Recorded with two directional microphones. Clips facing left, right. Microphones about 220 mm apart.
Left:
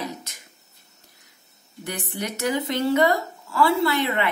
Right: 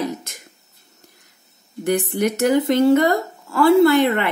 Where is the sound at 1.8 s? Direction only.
50° right (ahead or behind).